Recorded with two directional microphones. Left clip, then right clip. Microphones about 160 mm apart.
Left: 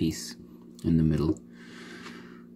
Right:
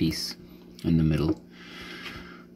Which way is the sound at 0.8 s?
20° left (ahead or behind).